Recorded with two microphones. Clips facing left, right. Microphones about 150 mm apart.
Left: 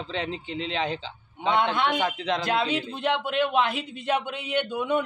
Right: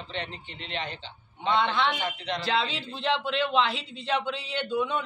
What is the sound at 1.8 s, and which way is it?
A woman's voice, 50° left (ahead or behind).